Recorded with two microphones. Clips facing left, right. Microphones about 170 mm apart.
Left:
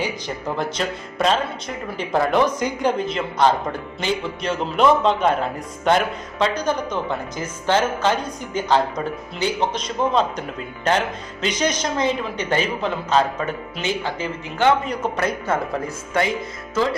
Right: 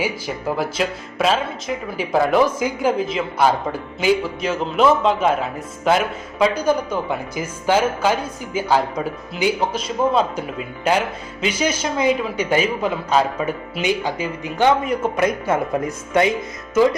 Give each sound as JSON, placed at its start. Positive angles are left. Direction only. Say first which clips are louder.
{"t": 0.0, "sound": "a man's voice", "louder": "right 2 dB", "side_deg": -5}